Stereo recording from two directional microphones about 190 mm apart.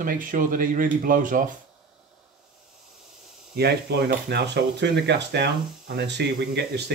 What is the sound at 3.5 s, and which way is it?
Speech, 60° right (ahead or behind).